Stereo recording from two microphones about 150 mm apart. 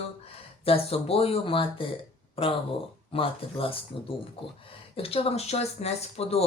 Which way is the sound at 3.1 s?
40° left (ahead or behind).